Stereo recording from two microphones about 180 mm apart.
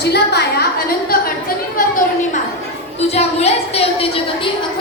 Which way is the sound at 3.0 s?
35° left (ahead or behind).